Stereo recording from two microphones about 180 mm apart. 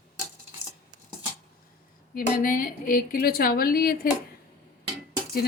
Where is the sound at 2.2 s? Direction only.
50° left (ahead or behind).